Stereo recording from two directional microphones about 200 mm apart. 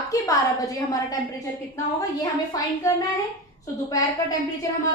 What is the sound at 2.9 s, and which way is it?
Speech, 15° left (ahead or behind).